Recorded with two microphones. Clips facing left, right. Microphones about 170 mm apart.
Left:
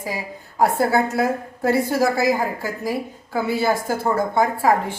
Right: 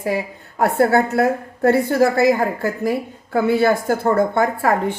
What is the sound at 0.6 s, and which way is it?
A woman's voice, 60° right (ahead or behind).